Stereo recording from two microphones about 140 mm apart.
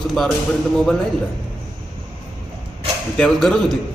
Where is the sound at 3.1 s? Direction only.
5° left (ahead or behind).